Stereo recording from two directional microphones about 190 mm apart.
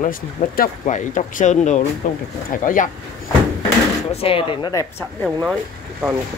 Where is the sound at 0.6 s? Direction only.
40° left (ahead or behind).